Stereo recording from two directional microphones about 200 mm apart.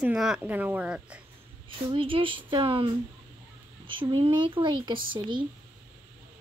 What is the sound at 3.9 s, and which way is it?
A woman's voice, 25° right (ahead or behind).